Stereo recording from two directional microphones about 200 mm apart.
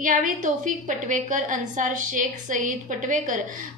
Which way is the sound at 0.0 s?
40° right (ahead or behind).